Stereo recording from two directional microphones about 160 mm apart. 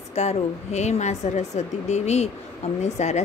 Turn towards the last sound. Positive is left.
turn(degrees=45)  # may be behind; listen again after turning